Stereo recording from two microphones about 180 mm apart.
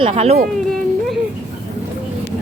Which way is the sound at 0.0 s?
35° right (ahead or behind).